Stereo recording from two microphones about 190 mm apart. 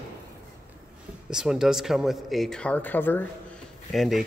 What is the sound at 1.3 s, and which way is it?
Speech, 5° right (ahead or behind).